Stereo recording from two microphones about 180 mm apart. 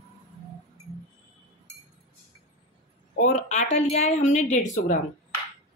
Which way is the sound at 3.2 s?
45° left (ahead or behind).